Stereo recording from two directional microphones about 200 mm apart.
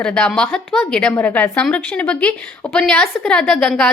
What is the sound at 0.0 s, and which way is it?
A woman's voice, 5° left (ahead or behind).